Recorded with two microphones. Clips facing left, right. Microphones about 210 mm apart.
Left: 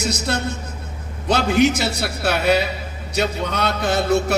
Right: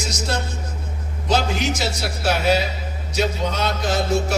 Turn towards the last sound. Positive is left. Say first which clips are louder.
# left 2 dB
turn(degrees=60)  # may be behind; listen again after turning